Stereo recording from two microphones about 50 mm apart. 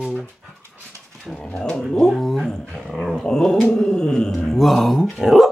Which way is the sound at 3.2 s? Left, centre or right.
Centre.